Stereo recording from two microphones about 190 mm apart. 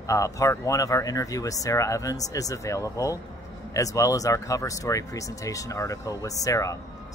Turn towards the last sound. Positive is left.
turn(degrees=15)  # may be behind; listen again after turning